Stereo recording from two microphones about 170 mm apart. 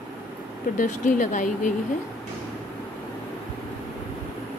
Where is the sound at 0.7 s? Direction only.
45° left (ahead or behind).